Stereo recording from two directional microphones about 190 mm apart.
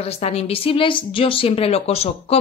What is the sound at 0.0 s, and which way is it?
Speech, 30° left (ahead or behind).